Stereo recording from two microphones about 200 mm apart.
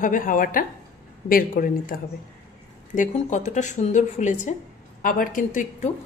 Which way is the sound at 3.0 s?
35° left (ahead or behind).